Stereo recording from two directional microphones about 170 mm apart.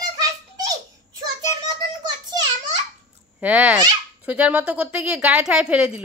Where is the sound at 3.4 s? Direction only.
5° right (ahead or behind).